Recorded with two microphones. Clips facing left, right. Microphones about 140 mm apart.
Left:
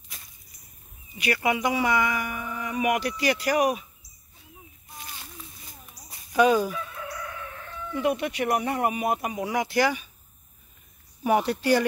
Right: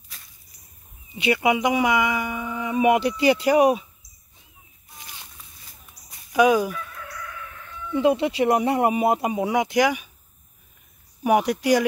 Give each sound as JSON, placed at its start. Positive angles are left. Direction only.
{"t": 1.1, "sound": "speech", "side_deg": -25}
{"t": 6.3, "sound": "speech", "side_deg": -10}
{"t": 6.7, "sound": "crowing", "side_deg": 20}
{"t": 7.9, "sound": "speech", "side_deg": -25}
{"t": 11.2, "sound": "speech", "side_deg": -10}